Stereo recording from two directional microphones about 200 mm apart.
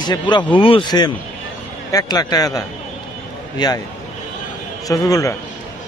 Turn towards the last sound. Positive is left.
turn(degrees=15)  # may be behind; listen again after turning